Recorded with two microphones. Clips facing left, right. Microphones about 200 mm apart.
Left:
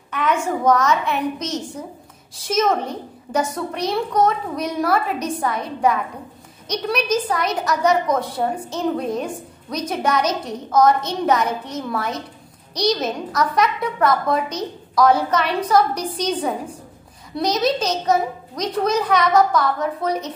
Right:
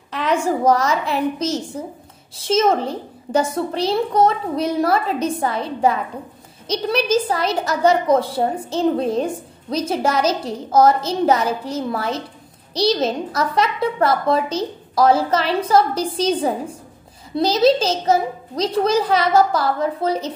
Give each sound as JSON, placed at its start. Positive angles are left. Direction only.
{"t": 0.1, "sound": "a woman's voice", "side_deg": -35}